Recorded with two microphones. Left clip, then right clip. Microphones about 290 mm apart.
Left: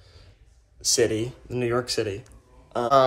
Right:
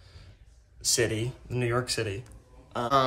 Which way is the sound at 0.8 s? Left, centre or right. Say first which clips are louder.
Left 5 dB; centre.